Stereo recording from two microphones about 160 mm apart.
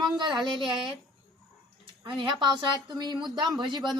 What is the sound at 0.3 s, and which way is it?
Speech, centre (ahead or behind).